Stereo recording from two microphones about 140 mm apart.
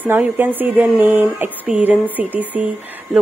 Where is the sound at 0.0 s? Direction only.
15° right (ahead or behind).